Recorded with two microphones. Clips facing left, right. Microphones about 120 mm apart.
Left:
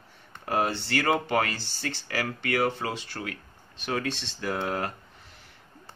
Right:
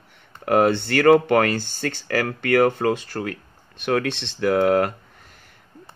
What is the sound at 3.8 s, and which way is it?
Speech, 65° right (ahead or behind).